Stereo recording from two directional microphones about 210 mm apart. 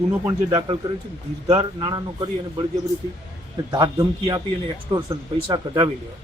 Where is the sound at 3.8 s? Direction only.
20° right (ahead or behind).